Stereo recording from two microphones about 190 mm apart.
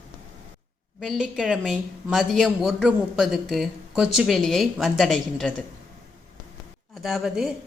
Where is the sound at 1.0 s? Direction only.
5° right (ahead or behind).